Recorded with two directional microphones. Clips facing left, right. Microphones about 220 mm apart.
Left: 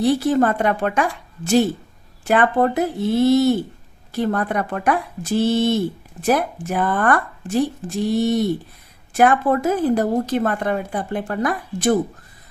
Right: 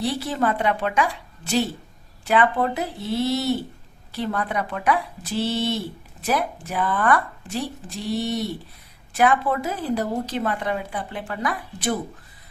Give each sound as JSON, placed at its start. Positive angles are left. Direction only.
{"t": 0.0, "sound": "a woman's voice", "side_deg": 45}